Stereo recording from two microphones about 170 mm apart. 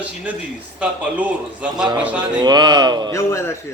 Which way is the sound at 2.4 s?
25° right (ahead or behind).